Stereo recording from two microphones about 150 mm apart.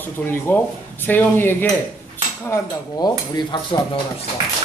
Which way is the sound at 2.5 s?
25° left (ahead or behind).